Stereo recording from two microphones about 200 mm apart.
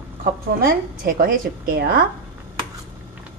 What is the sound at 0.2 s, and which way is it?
A woman's voice, 45° right (ahead or behind).